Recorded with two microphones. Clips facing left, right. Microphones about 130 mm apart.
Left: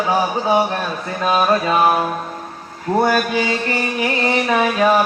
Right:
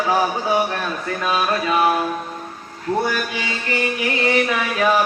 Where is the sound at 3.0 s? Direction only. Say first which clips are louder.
Left 8 dB; 50° left (ahead or behind).